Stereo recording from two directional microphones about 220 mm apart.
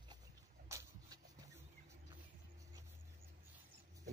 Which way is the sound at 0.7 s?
10° right (ahead or behind).